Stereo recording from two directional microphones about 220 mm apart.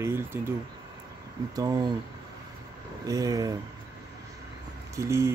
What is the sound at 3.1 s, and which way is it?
Speech, 15° right (ahead or behind).